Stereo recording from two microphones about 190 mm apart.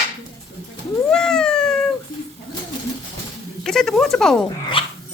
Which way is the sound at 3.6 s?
Centre (ahead or behind).